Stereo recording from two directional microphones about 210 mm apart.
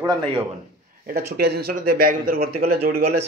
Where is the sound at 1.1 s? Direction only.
50° right (ahead or behind).